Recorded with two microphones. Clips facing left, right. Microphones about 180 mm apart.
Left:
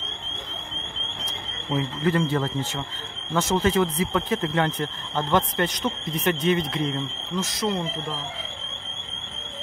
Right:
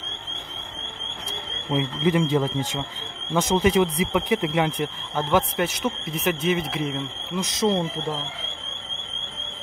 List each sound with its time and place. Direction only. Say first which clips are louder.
1.2 s speech: right 3 dB; 15° right (ahead or behind)
7.4 s speech: right 6 dB; 25° right (ahead or behind)